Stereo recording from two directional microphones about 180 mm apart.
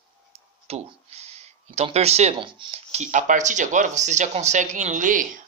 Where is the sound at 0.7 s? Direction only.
35° right (ahead or behind).